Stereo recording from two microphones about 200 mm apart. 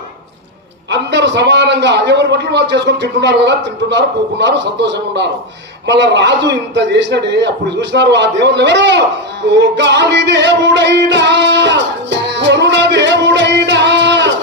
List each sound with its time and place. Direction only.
0.9 s a man's voice: 60° right (ahead or behind)
9.5 s music: 60° right (ahead or behind)